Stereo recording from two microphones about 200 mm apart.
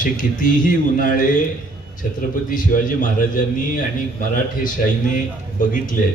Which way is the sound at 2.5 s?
40° left (ahead or behind).